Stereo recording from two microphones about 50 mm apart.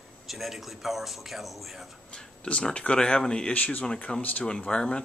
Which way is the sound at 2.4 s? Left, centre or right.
Left.